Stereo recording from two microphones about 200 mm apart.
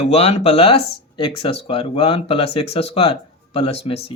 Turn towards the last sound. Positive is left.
turn(degrees=30)  # may be behind; listen again after turning